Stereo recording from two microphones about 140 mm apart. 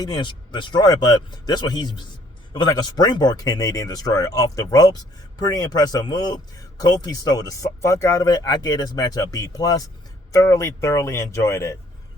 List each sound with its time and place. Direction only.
0.0 s a man's voice: 35° left (ahead or behind)